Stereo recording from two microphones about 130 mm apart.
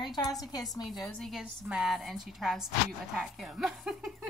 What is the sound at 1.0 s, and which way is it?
Speech, 5° left (ahead or behind).